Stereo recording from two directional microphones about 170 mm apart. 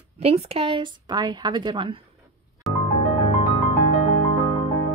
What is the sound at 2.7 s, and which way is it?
Music, centre (ahead or behind).